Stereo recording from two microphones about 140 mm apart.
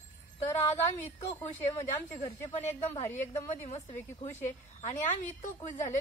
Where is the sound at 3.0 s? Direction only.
15° left (ahead or behind).